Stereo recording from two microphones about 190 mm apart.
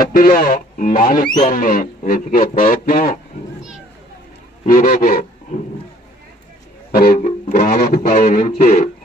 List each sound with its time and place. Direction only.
0.0 s a man's voice: 50° left (ahead or behind)
4.6 s speech: 45° left (ahead or behind)
6.9 s speech: 50° left (ahead or behind)
7.2 s a man's voice: 35° left (ahead or behind)